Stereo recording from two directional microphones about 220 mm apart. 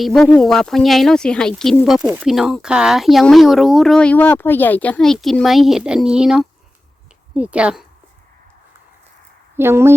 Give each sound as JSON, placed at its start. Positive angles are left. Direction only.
{"t": 0.0, "sound": "speech", "side_deg": 0}
{"t": 9.6, "sound": "speech", "side_deg": -10}